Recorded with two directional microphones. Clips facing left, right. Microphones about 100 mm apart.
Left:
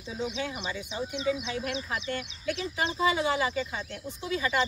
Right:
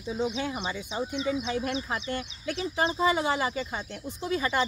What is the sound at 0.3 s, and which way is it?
Speech, 40° right (ahead or behind).